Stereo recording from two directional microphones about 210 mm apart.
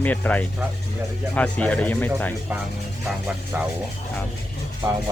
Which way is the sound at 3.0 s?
10° right (ahead or behind).